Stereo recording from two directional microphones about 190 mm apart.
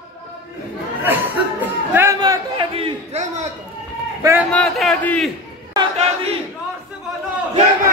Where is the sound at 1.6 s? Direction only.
10° right (ahead or behind).